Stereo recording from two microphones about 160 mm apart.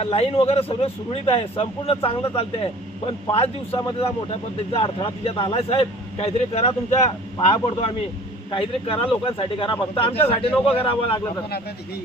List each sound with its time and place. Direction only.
0.0 s speech: 35° left (ahead or behind)